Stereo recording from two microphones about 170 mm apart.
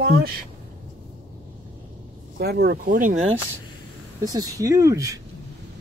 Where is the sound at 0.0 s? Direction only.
60° right (ahead or behind).